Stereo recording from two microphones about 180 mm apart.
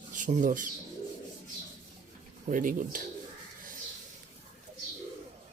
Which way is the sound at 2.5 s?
50° right (ahead or behind).